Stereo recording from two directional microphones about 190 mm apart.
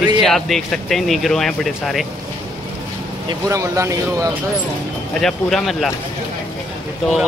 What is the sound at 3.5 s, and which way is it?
Speech, 15° right (ahead or behind).